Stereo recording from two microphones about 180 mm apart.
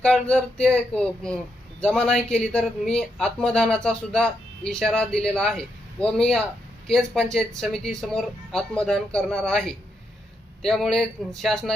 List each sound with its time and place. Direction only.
0.0 s speech: 5° left (ahead or behind)